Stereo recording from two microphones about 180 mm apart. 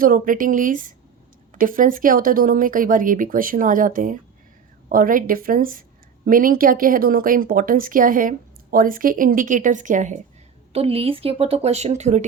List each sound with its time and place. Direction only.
0.0 s speech: 50° right (ahead or behind)
10.7 s speech: 35° right (ahead or behind)